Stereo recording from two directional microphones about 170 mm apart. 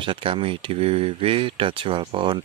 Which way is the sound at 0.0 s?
30° right (ahead or behind).